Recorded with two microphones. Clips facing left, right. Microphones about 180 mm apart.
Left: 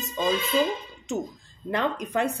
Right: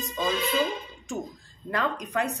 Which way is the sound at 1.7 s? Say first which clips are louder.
Left 2 dB; 25° left (ahead or behind).